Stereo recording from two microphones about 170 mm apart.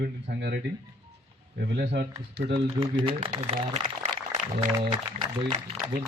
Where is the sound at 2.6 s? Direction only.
30° right (ahead or behind).